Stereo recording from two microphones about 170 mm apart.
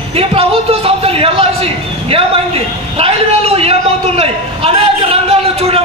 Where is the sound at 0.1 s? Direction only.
35° right (ahead or behind).